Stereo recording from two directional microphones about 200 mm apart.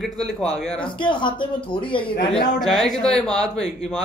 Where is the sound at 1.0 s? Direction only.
25° left (ahead or behind).